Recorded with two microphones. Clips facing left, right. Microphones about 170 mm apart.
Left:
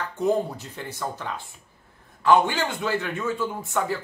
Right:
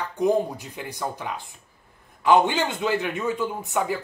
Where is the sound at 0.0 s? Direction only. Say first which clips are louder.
Right 2 dB; 15° right (ahead or behind).